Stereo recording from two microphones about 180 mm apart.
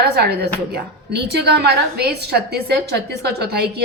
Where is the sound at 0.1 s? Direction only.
65° right (ahead or behind).